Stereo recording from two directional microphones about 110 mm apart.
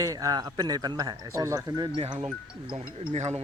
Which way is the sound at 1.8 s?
45° right (ahead or behind).